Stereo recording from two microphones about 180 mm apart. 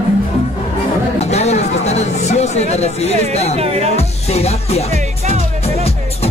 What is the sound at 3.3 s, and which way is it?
Music, 35° left (ahead or behind).